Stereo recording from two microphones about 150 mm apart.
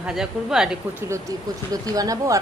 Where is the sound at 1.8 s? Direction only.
25° right (ahead or behind).